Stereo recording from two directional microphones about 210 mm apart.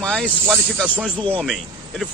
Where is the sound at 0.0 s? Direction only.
5° left (ahead or behind).